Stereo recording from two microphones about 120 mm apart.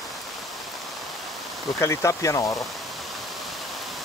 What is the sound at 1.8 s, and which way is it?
Speech, 25° left (ahead or behind).